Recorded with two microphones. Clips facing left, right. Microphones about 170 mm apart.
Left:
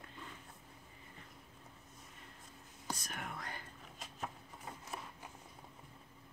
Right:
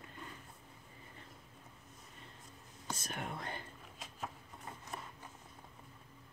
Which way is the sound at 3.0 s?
25° right (ahead or behind).